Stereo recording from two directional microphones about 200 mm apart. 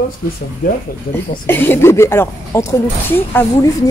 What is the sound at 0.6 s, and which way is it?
Speech, 45° left (ahead or behind).